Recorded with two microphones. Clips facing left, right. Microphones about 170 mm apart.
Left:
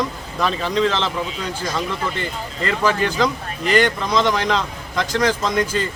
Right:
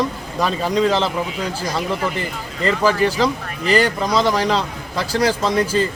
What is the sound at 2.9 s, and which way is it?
Speech, 35° right (ahead or behind).